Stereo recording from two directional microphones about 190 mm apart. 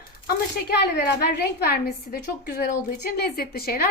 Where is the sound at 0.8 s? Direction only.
60° left (ahead or behind).